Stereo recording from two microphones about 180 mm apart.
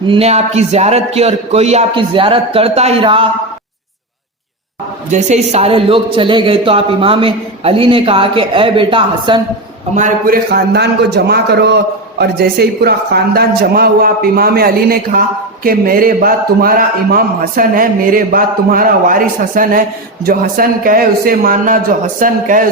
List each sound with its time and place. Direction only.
0.1 s a man's voice: 35° right (ahead or behind)
5.1 s speech: 35° right (ahead or behind)
9.9 s a man's voice: 50° right (ahead or behind)